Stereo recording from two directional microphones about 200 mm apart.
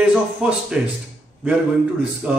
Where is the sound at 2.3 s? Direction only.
5° right (ahead or behind).